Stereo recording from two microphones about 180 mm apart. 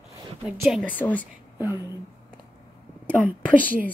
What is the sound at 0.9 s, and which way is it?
Speech, 10° left (ahead or behind).